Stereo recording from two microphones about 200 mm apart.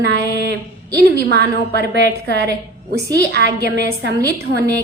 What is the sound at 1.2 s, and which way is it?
A woman's voice, 55° right (ahead or behind).